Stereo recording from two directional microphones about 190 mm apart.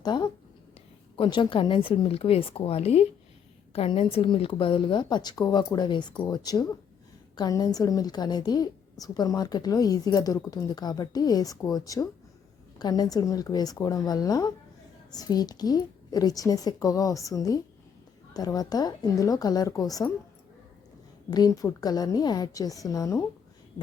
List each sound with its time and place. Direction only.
0.0 s a woman's voice: 25° left (ahead or behind)
21.2 s a woman's voice: 20° left (ahead or behind)